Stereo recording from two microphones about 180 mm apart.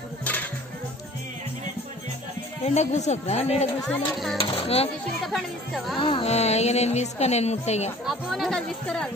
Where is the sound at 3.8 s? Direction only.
Centre (ahead or behind).